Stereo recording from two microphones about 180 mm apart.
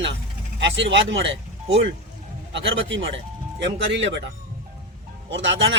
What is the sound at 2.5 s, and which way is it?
Speech, 90° right.